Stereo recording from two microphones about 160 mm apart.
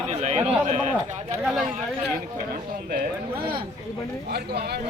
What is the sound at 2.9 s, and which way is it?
Speech, 70° right (ahead or behind).